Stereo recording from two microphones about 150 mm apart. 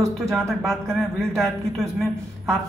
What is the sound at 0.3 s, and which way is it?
A man's voice, centre (ahead or behind).